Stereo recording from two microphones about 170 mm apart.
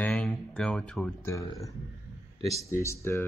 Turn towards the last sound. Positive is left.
turn(degrees=15)  # may be behind; listen again after turning